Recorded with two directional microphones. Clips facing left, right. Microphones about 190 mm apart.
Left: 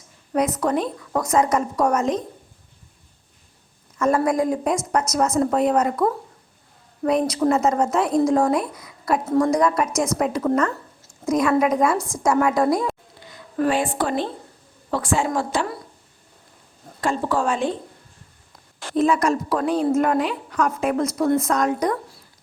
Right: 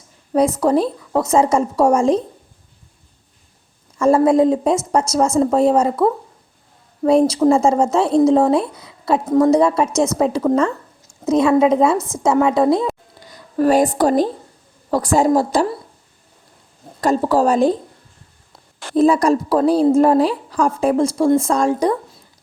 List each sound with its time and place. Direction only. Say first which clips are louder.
0.6 s a woman's voice: right 6 dB; 30° right (ahead or behind)
3.9 s a woman's voice: right 7 dB; 25° right (ahead or behind)
13.1 s a sound: right 6 dB; 40° right (ahead or behind)
14.8 s a woman's voice: right 7 dB; 40° right (ahead or behind)
17.0 s a woman's voice: right 7 dB; 40° right (ahead or behind)
18.9 s a woman's voice: right 5 dB; 35° right (ahead or behind)